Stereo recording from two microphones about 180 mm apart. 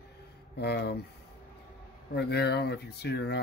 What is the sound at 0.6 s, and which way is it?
Speech, 65° left (ahead or behind).